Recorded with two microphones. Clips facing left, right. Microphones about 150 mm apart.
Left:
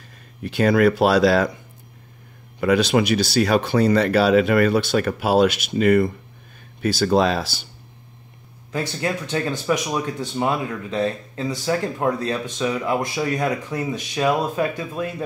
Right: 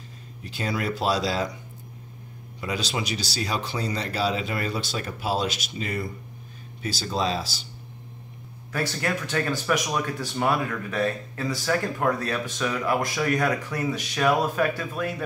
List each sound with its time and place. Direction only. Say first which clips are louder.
0.4 s speech: left 12 dB; 60° left (ahead or behind)
2.6 s speech: left 12 dB; 60° left (ahead or behind)
8.7 s speech: left 3 dB; 20° left (ahead or behind)